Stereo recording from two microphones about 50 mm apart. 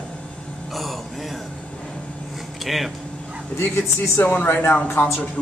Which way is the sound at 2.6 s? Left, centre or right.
Centre.